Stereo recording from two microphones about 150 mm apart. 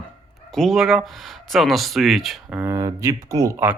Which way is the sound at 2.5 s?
20° right (ahead or behind).